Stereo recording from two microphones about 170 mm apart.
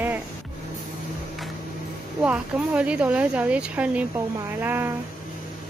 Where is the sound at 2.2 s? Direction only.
10° right (ahead or behind).